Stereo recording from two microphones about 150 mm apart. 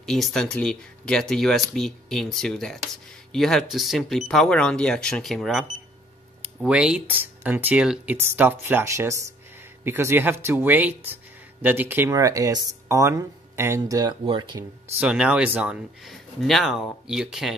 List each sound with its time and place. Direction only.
0.0 s speech: centre (ahead or behind); by 14.6 s 35° right (ahead or behind)
15.0 s speech: 5° right (ahead or behind)